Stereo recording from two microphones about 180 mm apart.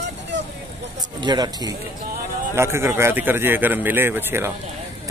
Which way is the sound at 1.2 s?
25° right (ahead or behind).